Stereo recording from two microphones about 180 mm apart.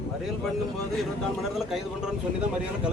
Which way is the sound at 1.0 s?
Centre (ahead or behind).